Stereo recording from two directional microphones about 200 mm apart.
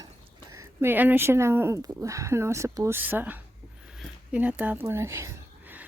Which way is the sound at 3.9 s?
5° right (ahead or behind).